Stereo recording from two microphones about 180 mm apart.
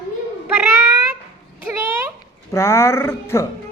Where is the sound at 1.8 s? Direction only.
15° right (ahead or behind).